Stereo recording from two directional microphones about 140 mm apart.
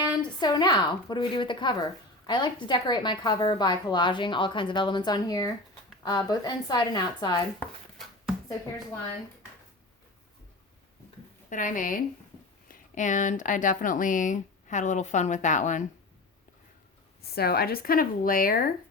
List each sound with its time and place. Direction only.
0.2 s a woman's voice: 30° left (ahead or behind)
7.6 s a sound: centre (ahead or behind)
11.4 s speech: 65° left (ahead or behind)
17.3 s a woman's voice: 90° left